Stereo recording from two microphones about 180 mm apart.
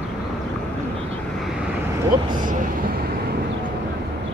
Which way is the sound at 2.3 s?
50° right (ahead or behind).